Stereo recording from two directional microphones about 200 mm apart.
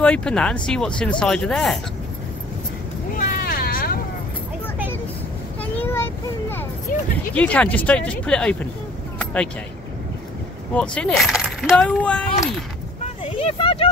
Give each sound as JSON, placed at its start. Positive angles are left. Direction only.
{"t": 0.0, "sound": "speech", "side_deg": 5}
{"t": 3.1, "sound": "vehicle", "side_deg": 45}
{"t": 5.6, "sound": "a sound", "side_deg": 10}
{"t": 7.3, "sound": "speech", "side_deg": 5}
{"t": 10.7, "sound": "speech", "side_deg": 5}
{"t": 13.0, "sound": "vehicle", "side_deg": 30}